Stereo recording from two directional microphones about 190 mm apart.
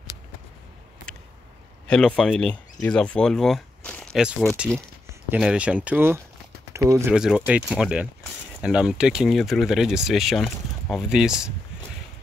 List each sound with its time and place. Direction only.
1.9 s speech: 5° left (ahead or behind)